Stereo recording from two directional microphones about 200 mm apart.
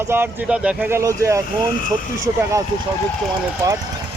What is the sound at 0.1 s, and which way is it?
Speech, 10° right (ahead or behind).